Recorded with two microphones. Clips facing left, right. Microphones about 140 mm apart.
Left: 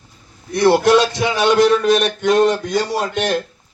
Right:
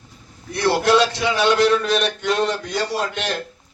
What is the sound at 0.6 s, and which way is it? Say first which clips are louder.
Music: left 4 dB; 15° left (ahead or behind).